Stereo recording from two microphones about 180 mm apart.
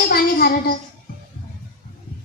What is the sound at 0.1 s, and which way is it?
Child singing, 60° left (ahead or behind).